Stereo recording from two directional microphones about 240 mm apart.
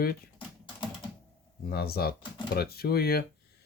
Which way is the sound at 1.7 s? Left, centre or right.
Left.